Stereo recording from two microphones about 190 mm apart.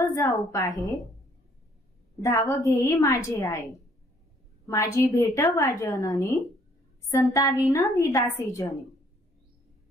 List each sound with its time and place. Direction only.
0.0 s a woman's voice: 15° left (ahead or behind)
2.2 s a woman's voice: 15° left (ahead or behind)
4.6 s a woman's voice: 15° left (ahead or behind)